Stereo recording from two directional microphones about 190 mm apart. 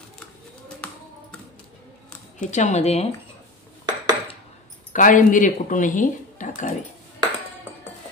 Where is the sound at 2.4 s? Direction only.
40° left (ahead or behind).